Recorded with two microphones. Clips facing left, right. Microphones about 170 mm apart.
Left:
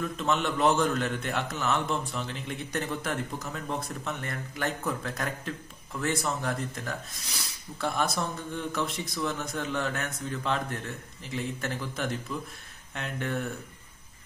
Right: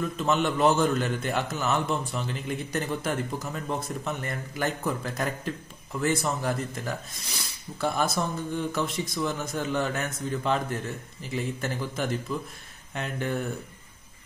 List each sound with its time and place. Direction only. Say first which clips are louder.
0.2 s a man's voice: right 3 dB; centre (ahead or behind)